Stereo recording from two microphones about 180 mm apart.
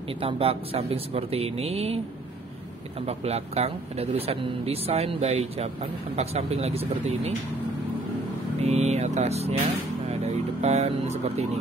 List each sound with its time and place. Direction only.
0.2 s speech: 30° right (ahead or behind)
3.1 s speech: 35° right (ahead or behind)
8.5 s speech: 35° right (ahead or behind)
10.0 s vehicle: 35° right (ahead or behind)